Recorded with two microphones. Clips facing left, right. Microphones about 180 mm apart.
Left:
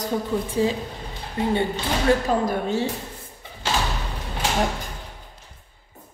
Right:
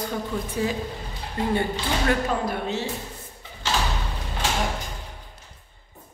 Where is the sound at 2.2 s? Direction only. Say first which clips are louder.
Left 4 dB; 40° left (ahead or behind).